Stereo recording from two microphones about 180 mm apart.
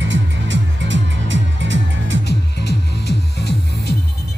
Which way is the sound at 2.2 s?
65° left (ahead or behind).